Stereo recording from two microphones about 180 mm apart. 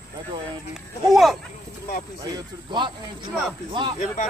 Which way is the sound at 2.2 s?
25° right (ahead or behind).